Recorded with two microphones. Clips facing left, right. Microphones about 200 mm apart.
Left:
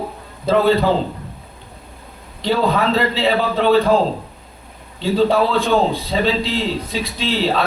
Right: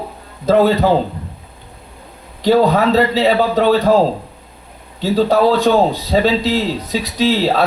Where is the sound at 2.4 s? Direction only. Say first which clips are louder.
Right 5 dB; 45° right (ahead or behind).